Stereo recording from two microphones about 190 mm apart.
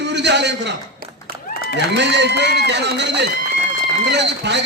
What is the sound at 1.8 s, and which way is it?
A man's voice, 65° right (ahead or behind).